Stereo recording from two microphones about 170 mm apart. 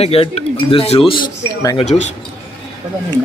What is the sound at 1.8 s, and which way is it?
Speech, 40° left (ahead or behind).